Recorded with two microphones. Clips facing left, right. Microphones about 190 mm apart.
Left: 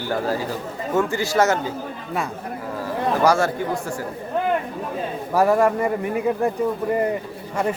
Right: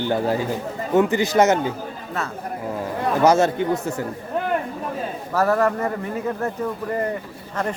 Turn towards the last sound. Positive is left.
turn(degrees=15)  # may be behind; listen again after turning